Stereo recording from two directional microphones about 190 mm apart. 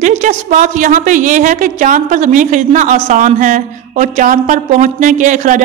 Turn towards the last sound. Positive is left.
turn(degrees=-40)  # may be behind; listen again after turning